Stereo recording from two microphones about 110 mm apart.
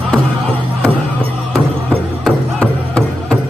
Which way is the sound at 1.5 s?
10° left (ahead or behind).